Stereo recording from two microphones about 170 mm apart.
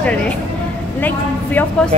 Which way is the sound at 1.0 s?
10° left (ahead or behind).